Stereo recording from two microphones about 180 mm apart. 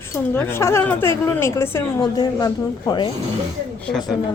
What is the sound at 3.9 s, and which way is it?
Speech, centre (ahead or behind).